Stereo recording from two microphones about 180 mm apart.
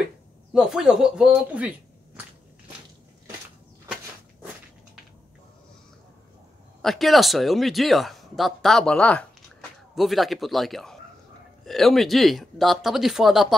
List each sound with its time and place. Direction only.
0.5 s speech: 5° right (ahead or behind)
6.8 s speech: centre (ahead or behind)